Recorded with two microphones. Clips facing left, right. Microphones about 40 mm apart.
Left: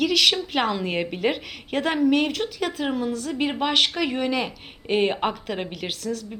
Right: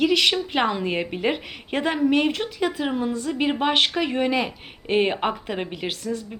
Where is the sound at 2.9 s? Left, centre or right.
Right; by 5.1 s centre.